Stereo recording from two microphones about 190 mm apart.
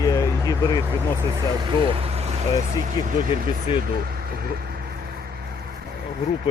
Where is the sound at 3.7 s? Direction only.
30° left (ahead or behind).